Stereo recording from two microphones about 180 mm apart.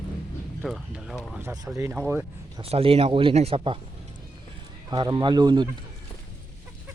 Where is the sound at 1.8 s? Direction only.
10° right (ahead or behind).